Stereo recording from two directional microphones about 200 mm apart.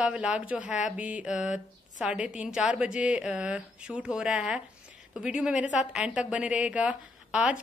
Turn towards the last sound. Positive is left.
turn(degrees=-5)  # may be behind; listen again after turning